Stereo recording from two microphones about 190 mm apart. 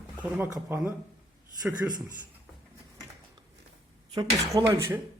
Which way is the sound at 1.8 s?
20° right (ahead or behind).